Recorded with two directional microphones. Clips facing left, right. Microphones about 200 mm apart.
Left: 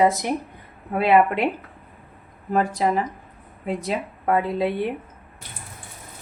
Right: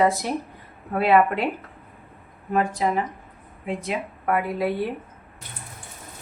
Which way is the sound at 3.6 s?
35° left (ahead or behind).